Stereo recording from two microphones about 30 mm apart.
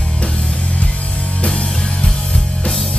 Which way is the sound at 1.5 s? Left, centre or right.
Left.